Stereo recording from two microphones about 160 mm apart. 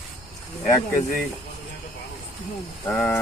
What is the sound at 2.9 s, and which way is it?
Speech, 10° left (ahead or behind).